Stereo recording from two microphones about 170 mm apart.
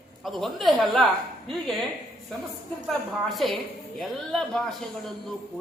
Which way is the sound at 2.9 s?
Centre (ahead or behind).